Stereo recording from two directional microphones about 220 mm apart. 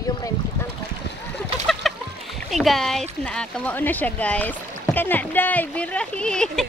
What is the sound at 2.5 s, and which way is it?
Speech, centre (ahead or behind).